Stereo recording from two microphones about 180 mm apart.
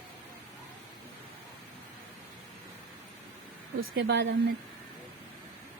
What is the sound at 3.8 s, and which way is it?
Speech, 75° right (ahead or behind).